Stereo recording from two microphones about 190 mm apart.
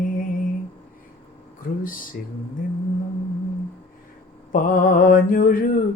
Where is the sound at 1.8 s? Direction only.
45° left (ahead or behind).